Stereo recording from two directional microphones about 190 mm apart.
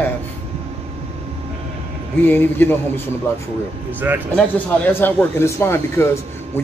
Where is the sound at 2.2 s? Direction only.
10° left (ahead or behind).